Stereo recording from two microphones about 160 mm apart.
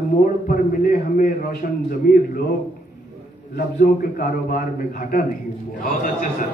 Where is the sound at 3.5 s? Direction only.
60° left (ahead or behind).